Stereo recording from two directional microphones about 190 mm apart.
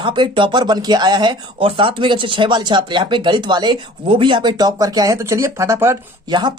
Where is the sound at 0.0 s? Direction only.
25° right (ahead or behind).